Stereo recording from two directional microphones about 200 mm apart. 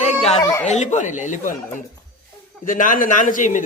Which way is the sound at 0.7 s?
35° left (ahead or behind).